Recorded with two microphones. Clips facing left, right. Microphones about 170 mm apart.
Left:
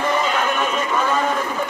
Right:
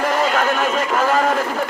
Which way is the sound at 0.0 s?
90° right.